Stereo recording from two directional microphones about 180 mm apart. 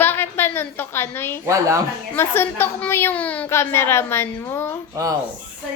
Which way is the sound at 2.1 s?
15° left (ahead or behind).